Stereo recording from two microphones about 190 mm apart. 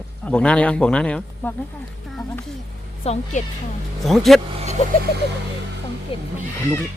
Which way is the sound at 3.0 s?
35° left (ahead or behind).